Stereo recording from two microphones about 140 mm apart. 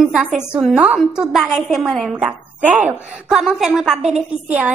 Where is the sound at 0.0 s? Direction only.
5° right (ahead or behind).